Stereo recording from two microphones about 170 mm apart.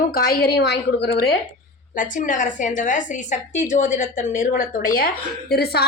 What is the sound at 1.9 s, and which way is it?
A woman's voice, 50° left (ahead or behind).